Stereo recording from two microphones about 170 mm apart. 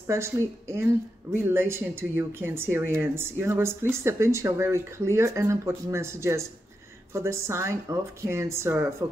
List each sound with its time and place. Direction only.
0.0 s speech: 15° right (ahead or behind)